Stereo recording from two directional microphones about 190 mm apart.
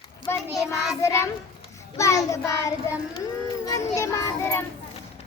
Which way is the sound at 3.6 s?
15° left (ahead or behind).